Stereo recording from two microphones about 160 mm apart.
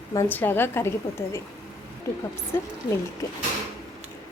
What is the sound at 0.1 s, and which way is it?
Speech, 15° left (ahead or behind).